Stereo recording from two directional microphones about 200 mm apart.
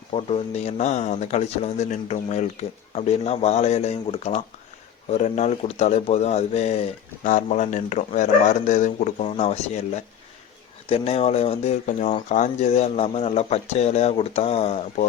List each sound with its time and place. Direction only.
0.1 s speech: 30° left (ahead or behind)